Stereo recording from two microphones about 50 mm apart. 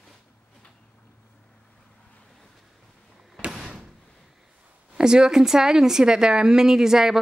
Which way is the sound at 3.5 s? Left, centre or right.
Centre.